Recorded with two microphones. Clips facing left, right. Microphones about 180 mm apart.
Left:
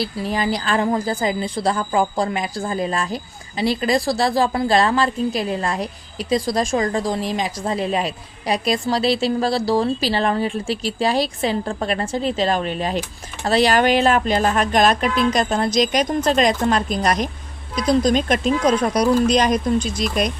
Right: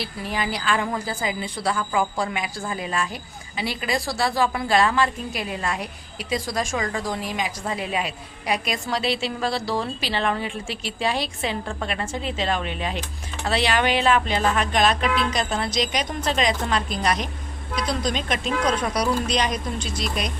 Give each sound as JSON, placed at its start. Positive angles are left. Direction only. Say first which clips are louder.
{"t": 0.0, "sound": "a woman's voice", "louder": "left 6 dB", "side_deg": 40}